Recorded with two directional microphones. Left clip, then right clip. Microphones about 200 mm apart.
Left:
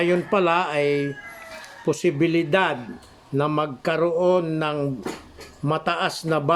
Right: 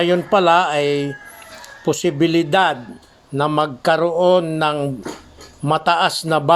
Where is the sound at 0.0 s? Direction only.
20° right (ahead or behind).